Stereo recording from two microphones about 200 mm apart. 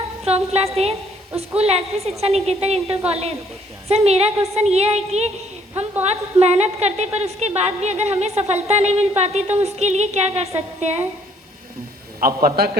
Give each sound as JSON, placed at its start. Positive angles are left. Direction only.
{"t": 0.3, "sound": "a woman's voice", "side_deg": -30}
{"t": 12.2, "sound": "a man's voice", "side_deg": -45}